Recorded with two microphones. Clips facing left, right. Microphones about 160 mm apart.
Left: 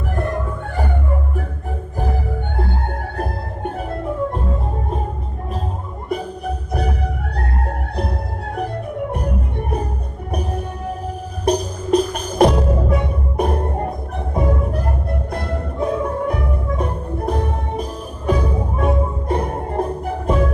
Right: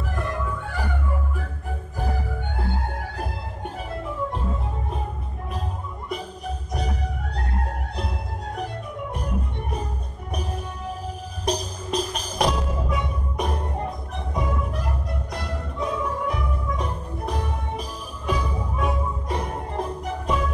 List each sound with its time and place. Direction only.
0.1 s music: 55° left (ahead or behind)
3.2 s music: 55° left (ahead or behind)
6.0 s music: 55° left (ahead or behind)